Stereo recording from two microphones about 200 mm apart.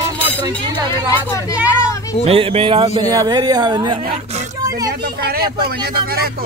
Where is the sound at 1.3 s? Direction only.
15° left (ahead or behind).